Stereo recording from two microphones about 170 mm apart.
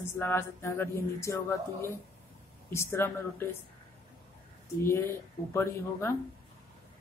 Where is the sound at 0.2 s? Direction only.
15° left (ahead or behind).